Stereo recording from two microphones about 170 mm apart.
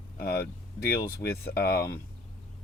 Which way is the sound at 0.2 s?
65° left (ahead or behind).